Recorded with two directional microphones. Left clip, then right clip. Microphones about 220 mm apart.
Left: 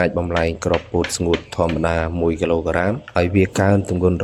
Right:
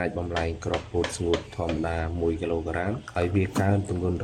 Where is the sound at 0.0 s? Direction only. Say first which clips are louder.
Left 10 dB; 50° left (ahead or behind).